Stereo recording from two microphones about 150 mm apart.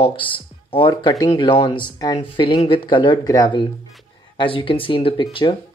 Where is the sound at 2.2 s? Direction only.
35° left (ahead or behind).